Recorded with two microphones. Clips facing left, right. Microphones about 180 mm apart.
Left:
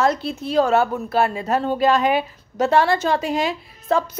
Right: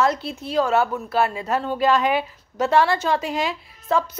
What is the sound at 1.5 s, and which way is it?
Speech, 25° left (ahead or behind).